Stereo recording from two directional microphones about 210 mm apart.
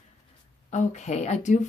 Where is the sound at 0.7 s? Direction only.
35° left (ahead or behind).